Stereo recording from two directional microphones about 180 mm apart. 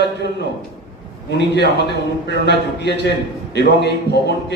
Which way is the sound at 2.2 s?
70° left (ahead or behind).